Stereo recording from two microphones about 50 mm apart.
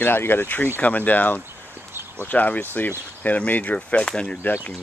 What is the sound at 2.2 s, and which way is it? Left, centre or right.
Speech, left.